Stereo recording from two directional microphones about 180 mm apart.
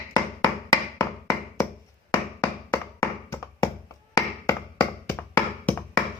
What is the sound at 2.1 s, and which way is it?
Tap, 15° left (ahead or behind).